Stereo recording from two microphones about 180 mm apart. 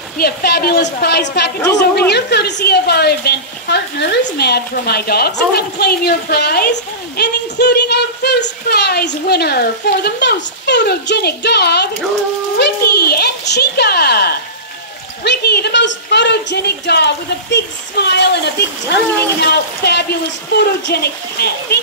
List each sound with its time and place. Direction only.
0.2 s a woman's voice: 60° left (ahead or behind)